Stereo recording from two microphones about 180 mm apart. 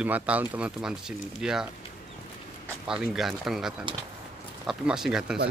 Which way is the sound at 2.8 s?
5° right (ahead or behind).